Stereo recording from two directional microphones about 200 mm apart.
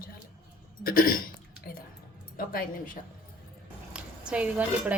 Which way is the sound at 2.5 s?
45° left (ahead or behind).